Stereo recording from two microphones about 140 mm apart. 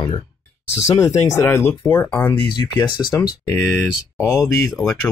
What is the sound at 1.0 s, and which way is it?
Speech, 20° left (ahead or behind).